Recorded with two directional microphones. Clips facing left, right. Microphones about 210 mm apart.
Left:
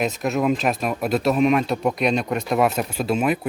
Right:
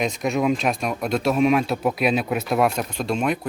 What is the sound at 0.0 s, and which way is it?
A man's voice, 5° left (ahead or behind).